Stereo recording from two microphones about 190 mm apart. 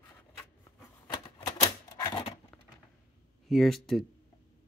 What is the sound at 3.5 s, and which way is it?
Speech, centre (ahead or behind).